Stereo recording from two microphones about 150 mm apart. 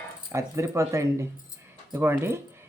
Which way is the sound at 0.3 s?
20° right (ahead or behind).